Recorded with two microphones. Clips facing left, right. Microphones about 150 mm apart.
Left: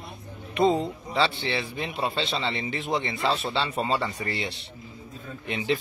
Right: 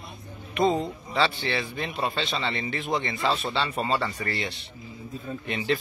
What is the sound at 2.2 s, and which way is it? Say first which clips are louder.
A man's voice: left 1 dB; 25° left (ahead or behind).